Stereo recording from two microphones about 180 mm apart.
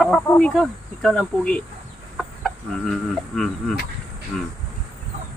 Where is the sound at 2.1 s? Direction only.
Centre (ahead or behind).